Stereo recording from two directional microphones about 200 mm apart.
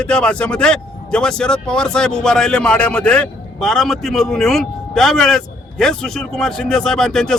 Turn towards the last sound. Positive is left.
turn(degrees=5)  # may be behind; listen again after turning